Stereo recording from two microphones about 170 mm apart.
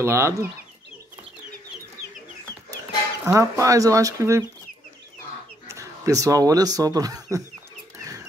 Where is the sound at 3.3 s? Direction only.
20° right (ahead or behind).